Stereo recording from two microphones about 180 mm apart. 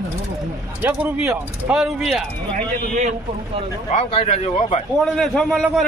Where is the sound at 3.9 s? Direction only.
35° left (ahead or behind).